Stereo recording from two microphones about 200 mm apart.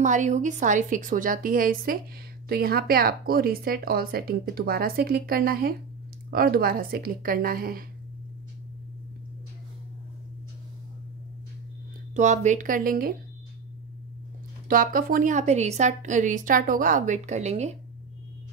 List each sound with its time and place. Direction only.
0.0 s a woman's voice: 40° right (ahead or behind)
12.2 s speech: 35° right (ahead or behind)
14.7 s a woman's voice: 45° right (ahead or behind)